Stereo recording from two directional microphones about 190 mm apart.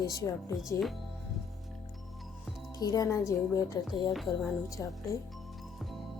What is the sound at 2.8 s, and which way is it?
A woman's voice, 20° left (ahead or behind).